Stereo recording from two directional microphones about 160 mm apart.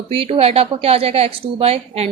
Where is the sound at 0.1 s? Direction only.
35° right (ahead or behind).